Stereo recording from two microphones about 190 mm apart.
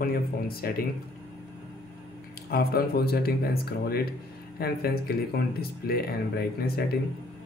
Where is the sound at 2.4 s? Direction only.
55° left (ahead or behind).